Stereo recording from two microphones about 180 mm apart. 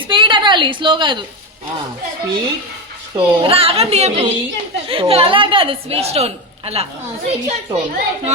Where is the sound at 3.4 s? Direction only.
30° right (ahead or behind).